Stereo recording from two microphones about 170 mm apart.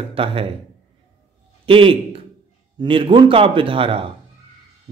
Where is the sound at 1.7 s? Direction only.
30° right (ahead or behind).